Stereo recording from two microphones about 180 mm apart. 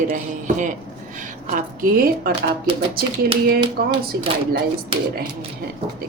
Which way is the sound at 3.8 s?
60° right (ahead or behind).